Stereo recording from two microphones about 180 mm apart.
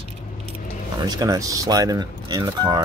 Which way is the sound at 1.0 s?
20° right (ahead or behind).